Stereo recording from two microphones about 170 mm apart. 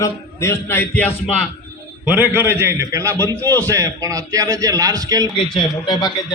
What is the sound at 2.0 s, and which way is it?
A man's voice, 10° right (ahead or behind).